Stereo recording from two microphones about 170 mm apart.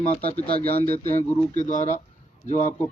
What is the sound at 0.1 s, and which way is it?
Speech, 35° left (ahead or behind).